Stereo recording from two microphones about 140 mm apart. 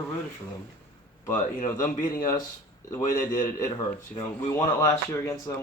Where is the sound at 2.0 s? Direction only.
70° left (ahead or behind).